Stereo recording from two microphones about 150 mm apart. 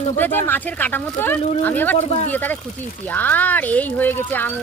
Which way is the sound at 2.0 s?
45° left (ahead or behind).